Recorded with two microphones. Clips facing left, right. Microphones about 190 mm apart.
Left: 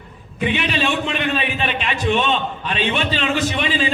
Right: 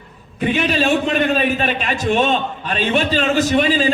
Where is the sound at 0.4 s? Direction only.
40° right (ahead or behind).